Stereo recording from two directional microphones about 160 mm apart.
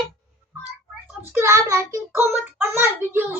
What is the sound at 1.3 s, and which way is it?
Child singing, 15° right (ahead or behind).